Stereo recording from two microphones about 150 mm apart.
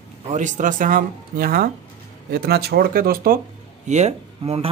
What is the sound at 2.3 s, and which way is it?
Speech, 90° right.